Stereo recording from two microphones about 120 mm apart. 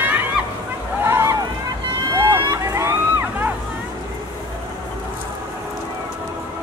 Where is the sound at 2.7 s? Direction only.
20° right (ahead or behind).